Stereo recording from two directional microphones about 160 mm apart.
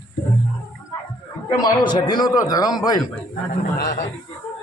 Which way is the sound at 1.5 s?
25° left (ahead or behind).